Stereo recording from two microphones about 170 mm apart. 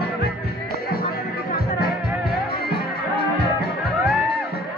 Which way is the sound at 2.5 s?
70° left (ahead or behind).